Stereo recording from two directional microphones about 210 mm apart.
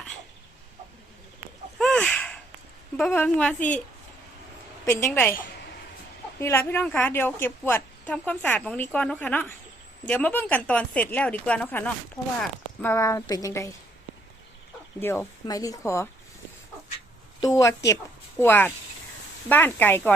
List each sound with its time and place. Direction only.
1.8 s a sound: 5° left (ahead or behind)
3.0 s speech: 5° left (ahead or behind)
4.9 s a woman's voice: 15° left (ahead or behind)
6.4 s a woman's voice: 10° left (ahead or behind)
15.0 s a woman's voice: 10° left (ahead or behind)
17.4 s a woman's voice: 15° left (ahead or behind)